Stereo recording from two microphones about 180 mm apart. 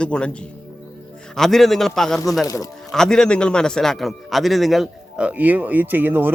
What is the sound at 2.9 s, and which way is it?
A man's voice, 5° left (ahead or behind).